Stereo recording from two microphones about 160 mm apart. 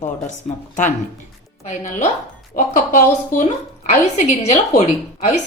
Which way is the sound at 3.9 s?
45° left (ahead or behind).